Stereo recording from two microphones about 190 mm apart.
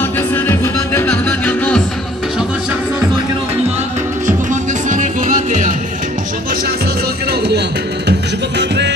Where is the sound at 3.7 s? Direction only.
35° right (ahead or behind).